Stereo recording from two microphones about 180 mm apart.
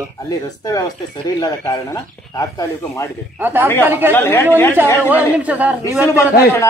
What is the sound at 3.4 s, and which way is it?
Speech, 10° right (ahead or behind).